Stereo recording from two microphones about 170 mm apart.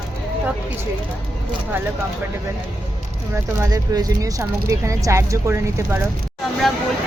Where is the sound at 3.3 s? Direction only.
20° right (ahead or behind).